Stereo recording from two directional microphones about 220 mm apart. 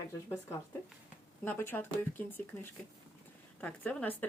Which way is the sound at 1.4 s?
10° left (ahead or behind).